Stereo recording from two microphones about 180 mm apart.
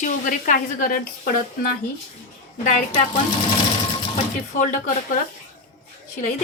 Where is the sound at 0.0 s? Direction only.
45° left (ahead or behind).